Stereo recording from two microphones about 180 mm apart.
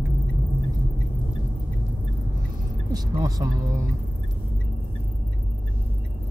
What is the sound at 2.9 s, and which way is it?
Speech, 20° right (ahead or behind).